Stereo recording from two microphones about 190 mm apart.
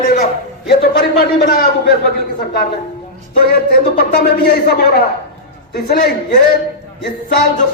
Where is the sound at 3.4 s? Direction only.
50° left (ahead or behind).